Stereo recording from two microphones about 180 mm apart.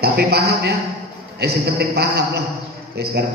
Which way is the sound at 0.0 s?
60° right (ahead or behind).